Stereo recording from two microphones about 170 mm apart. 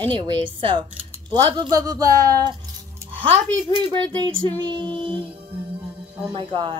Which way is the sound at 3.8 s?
25° right (ahead or behind).